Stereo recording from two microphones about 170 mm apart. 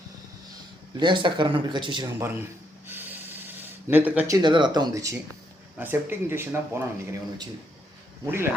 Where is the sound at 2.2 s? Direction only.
15° right (ahead or behind).